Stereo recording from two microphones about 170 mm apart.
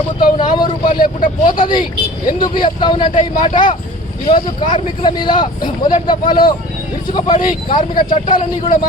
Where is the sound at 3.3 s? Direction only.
50° left (ahead or behind).